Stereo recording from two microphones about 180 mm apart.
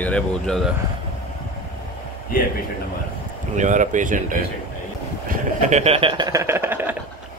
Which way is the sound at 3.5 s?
45° right (ahead or behind).